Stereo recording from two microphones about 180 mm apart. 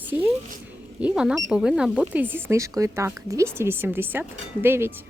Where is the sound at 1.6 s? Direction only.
5° right (ahead or behind).